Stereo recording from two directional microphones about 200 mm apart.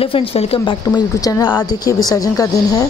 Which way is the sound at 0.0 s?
30° left (ahead or behind).